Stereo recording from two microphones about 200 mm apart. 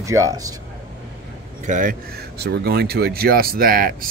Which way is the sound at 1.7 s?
45° right (ahead or behind).